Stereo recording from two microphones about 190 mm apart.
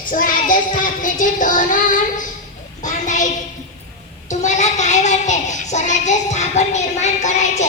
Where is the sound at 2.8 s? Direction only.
40° left (ahead or behind).